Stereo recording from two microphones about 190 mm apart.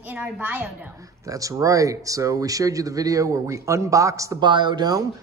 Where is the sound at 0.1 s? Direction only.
10° right (ahead or behind).